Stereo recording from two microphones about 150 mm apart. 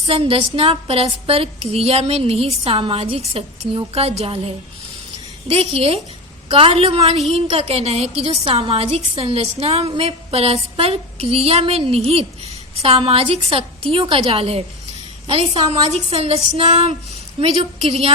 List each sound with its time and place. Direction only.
0.0 s a woman's voice: 40° right (ahead or behind)